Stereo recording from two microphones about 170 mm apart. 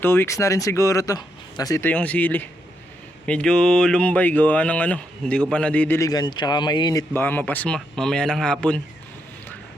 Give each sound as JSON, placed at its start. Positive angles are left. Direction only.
{"t": 0.0, "sound": "speech", "side_deg": 15}
{"t": 7.1, "sound": "speech", "side_deg": 10}